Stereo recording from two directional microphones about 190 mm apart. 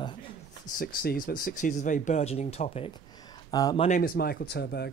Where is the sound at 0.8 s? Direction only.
50° left (ahead or behind); by 2.9 s 30° left (ahead or behind).